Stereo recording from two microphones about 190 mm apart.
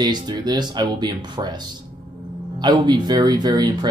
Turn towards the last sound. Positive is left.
turn(degrees=-20)  # may be behind; listen again after turning